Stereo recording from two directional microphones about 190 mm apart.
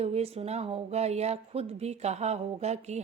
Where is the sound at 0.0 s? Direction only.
35° right (ahead or behind).